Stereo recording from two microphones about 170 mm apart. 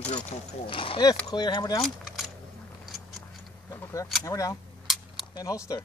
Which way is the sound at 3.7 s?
15° left (ahead or behind).